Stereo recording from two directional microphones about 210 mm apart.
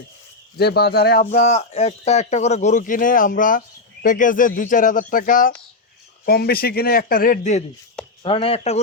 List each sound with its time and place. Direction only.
0.5 s speech: 50° left (ahead or behind)
1.2 s speech: 35° left (ahead or behind)
8.2 s speech: 25° left (ahead or behind)